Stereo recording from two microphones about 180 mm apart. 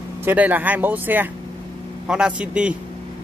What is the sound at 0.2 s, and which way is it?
A man's voice, 10° right (ahead or behind).